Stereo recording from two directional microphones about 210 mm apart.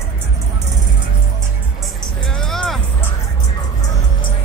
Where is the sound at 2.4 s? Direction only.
Centre (ahead or behind).